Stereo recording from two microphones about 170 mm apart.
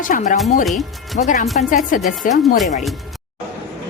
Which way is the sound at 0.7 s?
Centre (ahead or behind).